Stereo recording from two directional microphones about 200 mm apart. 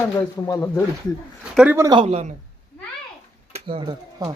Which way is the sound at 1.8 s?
25° right (ahead or behind).